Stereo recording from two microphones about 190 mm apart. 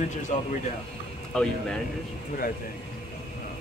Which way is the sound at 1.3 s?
5° left (ahead or behind).